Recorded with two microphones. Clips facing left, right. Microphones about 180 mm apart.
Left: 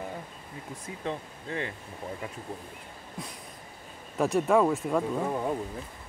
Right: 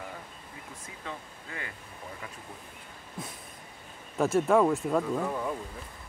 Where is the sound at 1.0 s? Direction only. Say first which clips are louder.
Left 7 dB; 30° left (ahead or behind).